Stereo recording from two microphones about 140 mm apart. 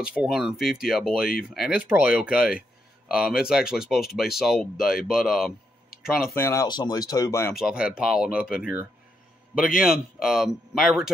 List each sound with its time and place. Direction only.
0.1 s speech: 5° right (ahead or behind)
6.3 s speech: 20° left (ahead or behind)
7.5 s speech: 5° right (ahead or behind)